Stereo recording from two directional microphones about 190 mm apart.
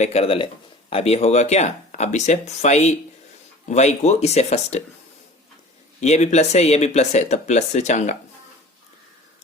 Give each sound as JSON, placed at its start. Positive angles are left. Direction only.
{"t": 0.0, "sound": "speech", "side_deg": 35}
{"t": 6.0, "sound": "speech", "side_deg": 35}